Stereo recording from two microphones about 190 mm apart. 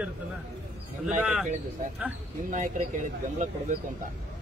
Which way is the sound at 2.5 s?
40° right (ahead or behind).